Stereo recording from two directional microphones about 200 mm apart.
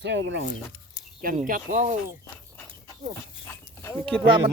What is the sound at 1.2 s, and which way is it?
Speech, 45° right (ahead or behind).